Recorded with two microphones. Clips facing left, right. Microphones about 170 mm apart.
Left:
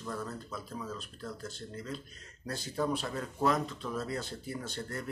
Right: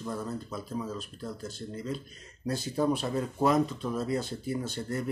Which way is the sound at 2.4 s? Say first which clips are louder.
Right 6 dB; 15° right (ahead or behind).